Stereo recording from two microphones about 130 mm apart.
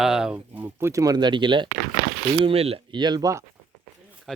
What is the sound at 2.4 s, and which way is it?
Speech, 50° right (ahead or behind).